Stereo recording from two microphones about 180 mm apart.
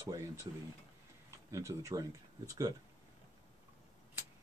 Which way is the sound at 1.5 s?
20° right (ahead or behind).